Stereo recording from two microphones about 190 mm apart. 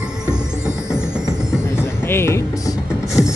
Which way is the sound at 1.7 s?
10° left (ahead or behind).